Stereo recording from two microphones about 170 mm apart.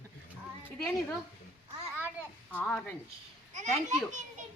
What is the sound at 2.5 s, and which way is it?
Speech, 5° left (ahead or behind).